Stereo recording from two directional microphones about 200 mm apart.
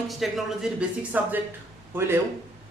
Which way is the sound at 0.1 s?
Centre (ahead or behind).